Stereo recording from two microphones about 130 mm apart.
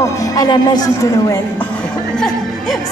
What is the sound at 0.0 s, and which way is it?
Speech, 30° left (ahead or behind).